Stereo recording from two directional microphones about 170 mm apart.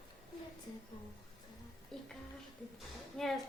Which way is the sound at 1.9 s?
5° left (ahead or behind).